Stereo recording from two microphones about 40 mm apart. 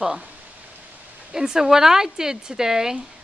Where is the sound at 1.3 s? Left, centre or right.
Centre.